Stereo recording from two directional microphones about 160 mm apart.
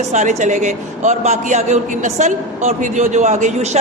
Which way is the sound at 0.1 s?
50° right (ahead or behind).